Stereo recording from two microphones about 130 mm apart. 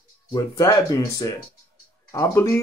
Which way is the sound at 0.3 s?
30° left (ahead or behind).